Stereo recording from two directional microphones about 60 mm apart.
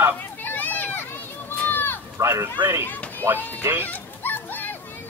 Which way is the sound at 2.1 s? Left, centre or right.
Right.